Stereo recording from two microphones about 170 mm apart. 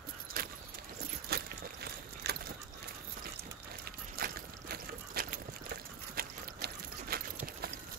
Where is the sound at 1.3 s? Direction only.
70° right (ahead or behind).